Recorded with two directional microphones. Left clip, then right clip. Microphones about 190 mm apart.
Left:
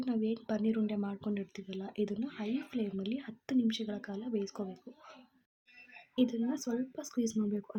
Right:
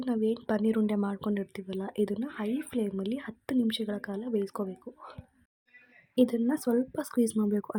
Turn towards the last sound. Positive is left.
turn(degrees=-20)  # may be behind; listen again after turning